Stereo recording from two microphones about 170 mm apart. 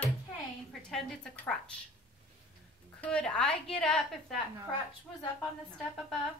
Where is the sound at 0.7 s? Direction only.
Centre (ahead or behind).